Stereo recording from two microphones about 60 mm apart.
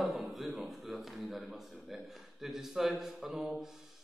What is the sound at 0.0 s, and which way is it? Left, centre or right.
A man's voice, centre.